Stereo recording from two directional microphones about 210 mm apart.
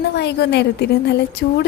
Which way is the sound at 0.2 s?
50° left (ahead or behind).